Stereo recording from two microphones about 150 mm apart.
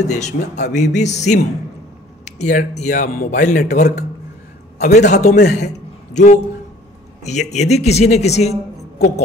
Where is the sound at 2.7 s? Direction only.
55° left (ahead or behind).